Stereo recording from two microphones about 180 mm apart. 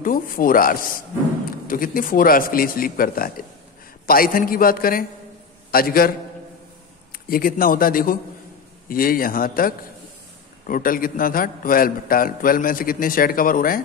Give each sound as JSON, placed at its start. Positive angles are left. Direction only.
{"t": 0.0, "sound": "a man's voice", "side_deg": 50}
{"t": 7.2, "sound": "a man's voice", "side_deg": 55}